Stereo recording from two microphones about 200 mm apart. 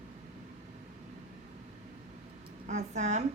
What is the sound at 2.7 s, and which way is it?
Speech, 35° right (ahead or behind).